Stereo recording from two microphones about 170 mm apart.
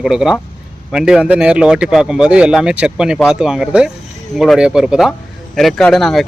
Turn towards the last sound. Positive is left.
turn(degrees=0)  # may be behind; listen again after turning